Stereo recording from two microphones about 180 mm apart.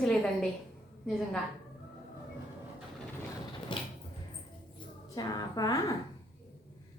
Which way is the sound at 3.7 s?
25° left (ahead or behind).